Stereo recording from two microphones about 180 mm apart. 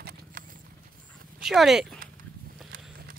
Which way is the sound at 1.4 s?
Centre (ahead or behind).